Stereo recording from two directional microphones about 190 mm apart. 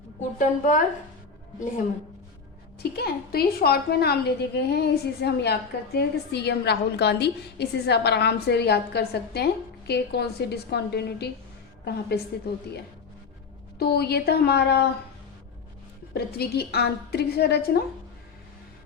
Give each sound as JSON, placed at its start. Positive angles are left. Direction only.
{"t": 0.2, "sound": "a woman's voice", "side_deg": 45}
{"t": 2.9, "sound": "a woman's voice", "side_deg": 55}
{"t": 13.7, "sound": "a woman's voice", "side_deg": 60}
{"t": 16.1, "sound": "a woman's voice", "side_deg": 55}